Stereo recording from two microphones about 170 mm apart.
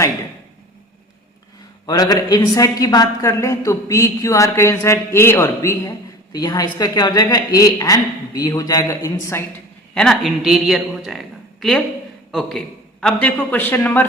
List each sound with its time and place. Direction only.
1.9 s a woman's voice: 25° left (ahead or behind)
9.9 s a man's voice: 5° left (ahead or behind)
12.3 s a man's voice: centre (ahead or behind)